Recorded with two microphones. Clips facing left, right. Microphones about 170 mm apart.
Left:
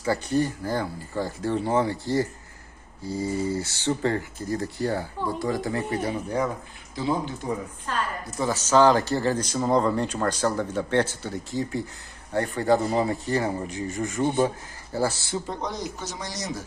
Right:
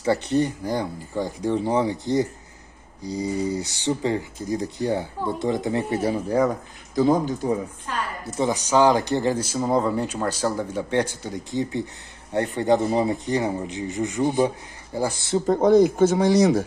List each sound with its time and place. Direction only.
0.0 s speech: 25° right (ahead or behind)
7.0 s speech: 40° right (ahead or behind)
8.4 s speech: 15° right (ahead or behind)
15.4 s speech: 50° right (ahead or behind)